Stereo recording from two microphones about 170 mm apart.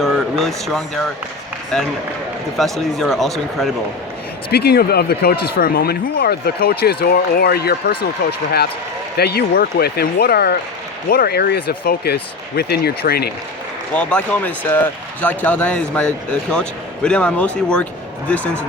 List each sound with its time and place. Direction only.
0.0 s speech: centre (ahead or behind)
4.5 s speech: 70° left (ahead or behind)
13.9 s speech: 10° left (ahead or behind)